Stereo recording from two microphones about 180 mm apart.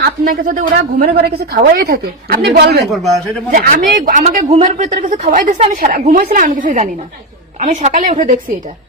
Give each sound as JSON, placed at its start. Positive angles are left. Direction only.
{"t": 0.0, "sound": "a woman's voice", "side_deg": -50}
{"t": 2.8, "sound": "a man's voice", "side_deg": 0}
{"t": 3.5, "sound": "a man's voice", "side_deg": -50}
{"t": 5.7, "sound": "a man's voice", "side_deg": -55}